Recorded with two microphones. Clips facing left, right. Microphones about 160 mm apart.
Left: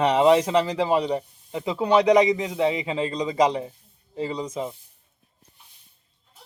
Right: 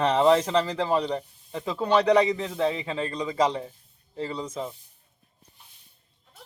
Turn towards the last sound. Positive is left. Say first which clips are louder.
# left 3 dB
turn(degrees=15)  # may be behind; listen again after turning